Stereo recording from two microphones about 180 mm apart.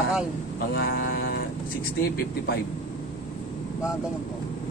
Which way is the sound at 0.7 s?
60° left (ahead or behind).